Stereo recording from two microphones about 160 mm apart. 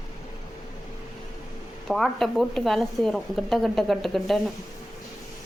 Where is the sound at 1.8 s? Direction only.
Centre (ahead or behind).